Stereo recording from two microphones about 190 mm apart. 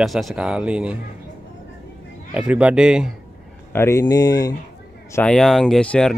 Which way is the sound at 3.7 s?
15° left (ahead or behind).